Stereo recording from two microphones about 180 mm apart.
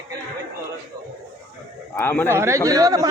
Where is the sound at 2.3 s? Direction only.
15° right (ahead or behind).